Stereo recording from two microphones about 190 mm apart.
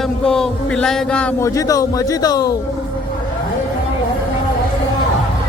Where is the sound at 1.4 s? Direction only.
15° left (ahead or behind).